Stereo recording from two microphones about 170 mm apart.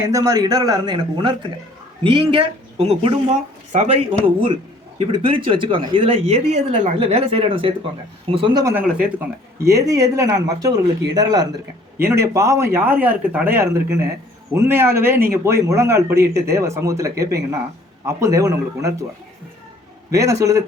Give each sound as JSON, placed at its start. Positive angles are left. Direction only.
{"t": 0.0, "sound": "speech", "side_deg": -20}
{"t": 8.6, "sound": "speech", "side_deg": -10}
{"t": 20.1, "sound": "speech", "side_deg": -20}